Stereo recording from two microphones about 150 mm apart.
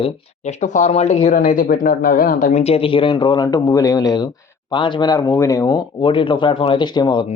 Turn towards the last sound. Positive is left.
turn(degrees=30)  # may be behind; listen again after turning